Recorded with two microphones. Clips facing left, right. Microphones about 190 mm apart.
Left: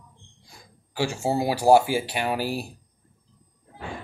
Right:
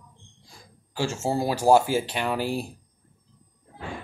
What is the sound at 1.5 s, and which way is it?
Speech, 10° left (ahead or behind).